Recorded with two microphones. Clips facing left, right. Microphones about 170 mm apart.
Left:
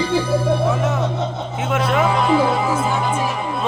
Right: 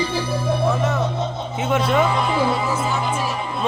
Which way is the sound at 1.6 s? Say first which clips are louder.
Even; centre (ahead or behind).